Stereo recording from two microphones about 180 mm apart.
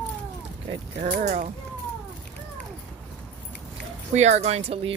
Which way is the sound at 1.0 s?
50° right (ahead or behind).